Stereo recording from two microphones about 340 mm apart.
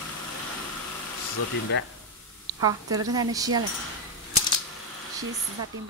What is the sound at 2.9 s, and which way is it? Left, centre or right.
Speech, centre.